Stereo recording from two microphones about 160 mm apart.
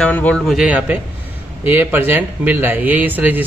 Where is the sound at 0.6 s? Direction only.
10° right (ahead or behind).